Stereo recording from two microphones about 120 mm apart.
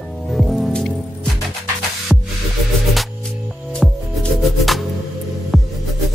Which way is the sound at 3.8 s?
Centre (ahead or behind).